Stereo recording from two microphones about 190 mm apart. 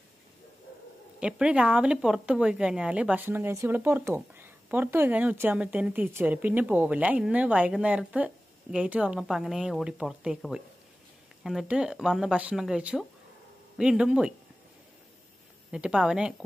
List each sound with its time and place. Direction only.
1.2 s speech: 5° right (ahead or behind)
15.7 s speech: 5° right (ahead or behind)